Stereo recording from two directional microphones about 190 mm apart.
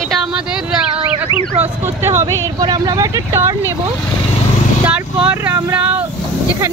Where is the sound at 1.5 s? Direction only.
15° right (ahead or behind).